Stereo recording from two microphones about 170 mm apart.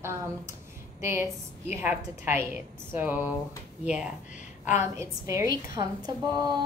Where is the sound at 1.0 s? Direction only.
15° right (ahead or behind).